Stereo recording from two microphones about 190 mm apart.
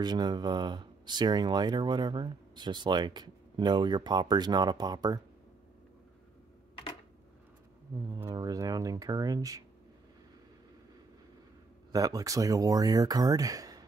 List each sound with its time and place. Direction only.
0.0 s speech: 20° right (ahead or behind)
8.1 s speech: 20° right (ahead or behind)
11.9 s speech: 20° right (ahead or behind)